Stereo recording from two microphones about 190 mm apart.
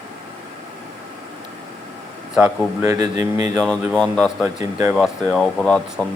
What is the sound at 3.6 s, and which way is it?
Speech, 5° left (ahead or behind).